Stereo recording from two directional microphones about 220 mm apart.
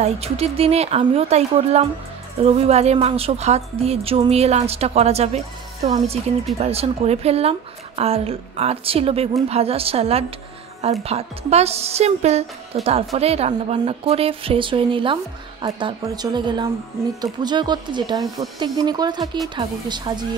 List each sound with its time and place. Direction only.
0.0 s a woman's voice: 25° right (ahead or behind)
6.6 s a woman's voice: 30° right (ahead or behind)